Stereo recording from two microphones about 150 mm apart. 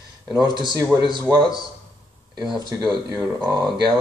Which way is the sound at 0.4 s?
30° right (ahead or behind).